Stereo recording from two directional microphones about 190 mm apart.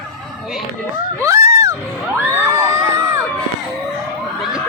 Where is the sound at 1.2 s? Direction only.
15° right (ahead or behind).